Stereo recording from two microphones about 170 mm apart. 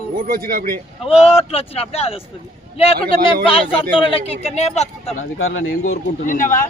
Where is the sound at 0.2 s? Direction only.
60° right (ahead or behind).